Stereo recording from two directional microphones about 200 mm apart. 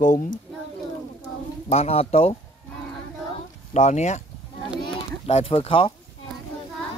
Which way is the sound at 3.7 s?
35° left (ahead or behind).